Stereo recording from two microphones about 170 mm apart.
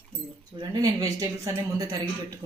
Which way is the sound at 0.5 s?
25° right (ahead or behind).